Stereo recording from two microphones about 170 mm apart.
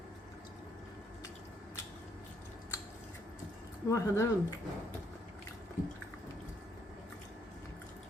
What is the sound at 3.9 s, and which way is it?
Speech, 15° left (ahead or behind).